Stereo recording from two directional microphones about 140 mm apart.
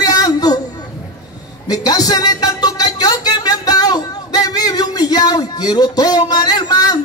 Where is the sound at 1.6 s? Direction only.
30° left (ahead or behind).